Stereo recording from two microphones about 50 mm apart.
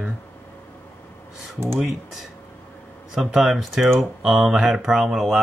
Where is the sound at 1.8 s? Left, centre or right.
Centre.